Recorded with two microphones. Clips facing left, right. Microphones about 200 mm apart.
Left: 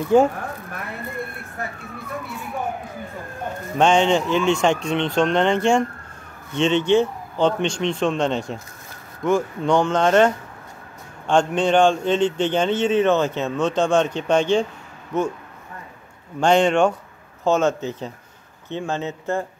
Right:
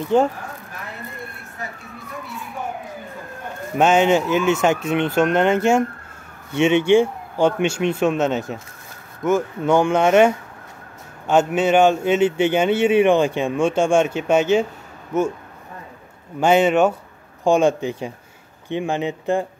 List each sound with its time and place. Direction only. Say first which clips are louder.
0.1 s speech: left 2 dB; 10° left (ahead or behind)
3.7 s a man's voice: right 1 dB; 5° right (ahead or behind)
16.3 s a man's voice: right 1 dB; 5° right (ahead or behind)